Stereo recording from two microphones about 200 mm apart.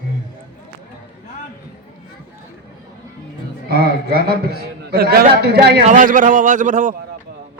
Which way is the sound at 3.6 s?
50° right (ahead or behind).